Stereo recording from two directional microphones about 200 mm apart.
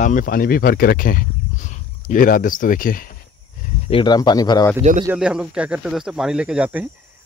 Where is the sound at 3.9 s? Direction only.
25° left (ahead or behind).